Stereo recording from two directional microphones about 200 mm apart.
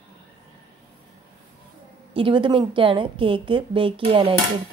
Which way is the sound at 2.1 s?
25° right (ahead or behind).